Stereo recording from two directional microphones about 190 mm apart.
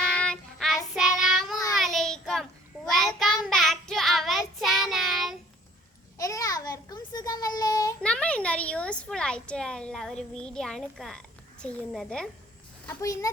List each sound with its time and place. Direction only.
0.2 s child singing: 5° left (ahead or behind)
6.1 s a sound: 15° left (ahead or behind)
8.0 s a woman's voice: 5° left (ahead or behind)
12.8 s speech: 15° left (ahead or behind)